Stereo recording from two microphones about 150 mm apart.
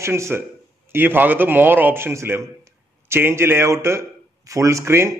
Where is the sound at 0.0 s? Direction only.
20° right (ahead or behind).